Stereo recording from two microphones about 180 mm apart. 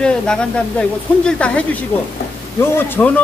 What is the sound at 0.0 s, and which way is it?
Speech, 5° left (ahead or behind).